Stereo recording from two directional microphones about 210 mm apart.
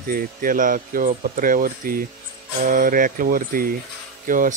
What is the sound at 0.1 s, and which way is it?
Speech, 40° right (ahead or behind).